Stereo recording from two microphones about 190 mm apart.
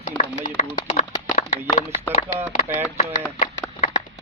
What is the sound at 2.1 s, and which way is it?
Speech, 35° left (ahead or behind).